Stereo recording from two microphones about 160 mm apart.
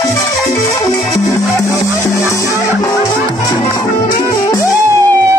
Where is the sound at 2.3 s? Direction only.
20° left (ahead or behind).